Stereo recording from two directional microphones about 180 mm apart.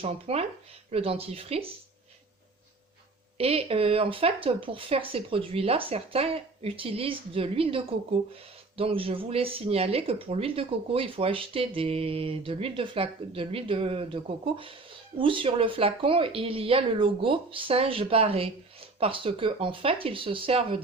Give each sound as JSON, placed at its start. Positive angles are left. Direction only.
{"t": 0.0, "sound": "speech", "side_deg": -35}
{"t": 3.3, "sound": "speech", "side_deg": -35}